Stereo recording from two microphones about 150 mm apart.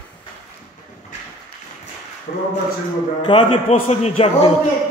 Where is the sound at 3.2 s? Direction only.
35° left (ahead or behind).